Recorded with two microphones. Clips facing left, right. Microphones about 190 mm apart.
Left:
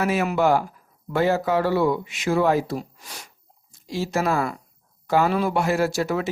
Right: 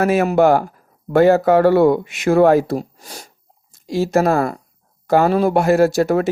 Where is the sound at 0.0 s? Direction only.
50° right (ahead or behind).